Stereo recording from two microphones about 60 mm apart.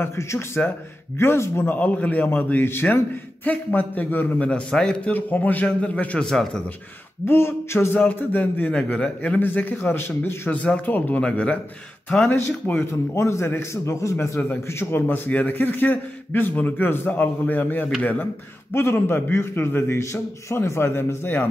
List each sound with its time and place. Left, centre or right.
0.0 s a man's voice: left
1.8 s a man's voice: left
4.5 s a man's voice: centre
5.1 s a man's voice: left; by 6.6 s centre
7.2 s a man's voice: left
8.0 s a man's voice: left
9.4 s a man's voice: left
10.5 s a man's voice: left
12.8 s a man's voice: left
14.7 s a man's voice: left
18.7 s a man's voice: left